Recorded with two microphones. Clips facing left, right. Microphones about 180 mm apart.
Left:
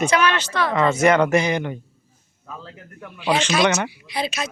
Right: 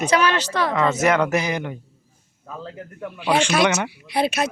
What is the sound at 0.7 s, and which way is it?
Speech, 5° right (ahead or behind).